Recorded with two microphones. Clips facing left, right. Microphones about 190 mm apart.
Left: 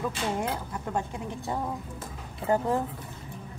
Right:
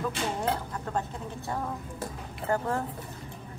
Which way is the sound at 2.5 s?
15° left (ahead or behind).